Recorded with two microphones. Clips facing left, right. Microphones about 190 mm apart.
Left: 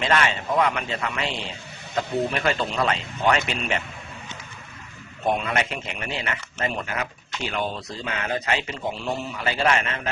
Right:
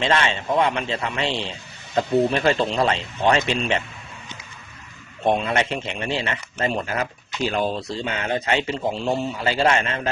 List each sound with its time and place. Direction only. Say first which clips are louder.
0.0 s speech: right 1 dB; 25° right (ahead or behind)
5.2 s speech: right 3 dB; 30° right (ahead or behind)